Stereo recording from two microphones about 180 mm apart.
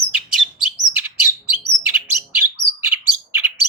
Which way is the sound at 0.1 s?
5° right (ahead or behind).